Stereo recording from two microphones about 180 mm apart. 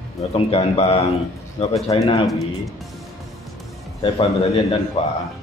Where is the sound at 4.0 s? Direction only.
30° left (ahead or behind).